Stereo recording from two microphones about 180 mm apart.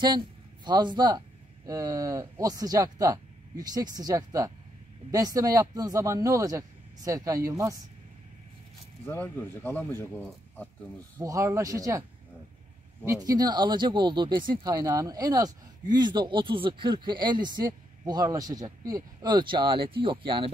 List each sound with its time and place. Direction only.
0.7 s speech: 25° right (ahead or behind)
9.0 s speech: 10° left (ahead or behind)
11.1 s speech: 15° right (ahead or behind)
13.0 s speech: 15° right (ahead or behind)